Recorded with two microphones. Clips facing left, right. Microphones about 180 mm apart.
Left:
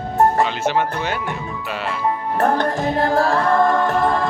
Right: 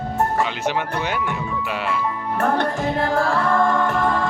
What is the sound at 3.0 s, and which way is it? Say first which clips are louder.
Speech: left 3 dB; 40° left (ahead or behind).